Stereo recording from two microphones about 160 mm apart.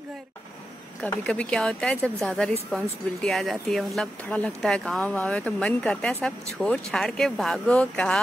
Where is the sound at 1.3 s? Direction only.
5° left (ahead or behind).